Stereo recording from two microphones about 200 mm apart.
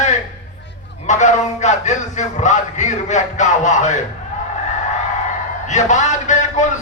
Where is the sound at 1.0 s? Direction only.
35° left (ahead or behind).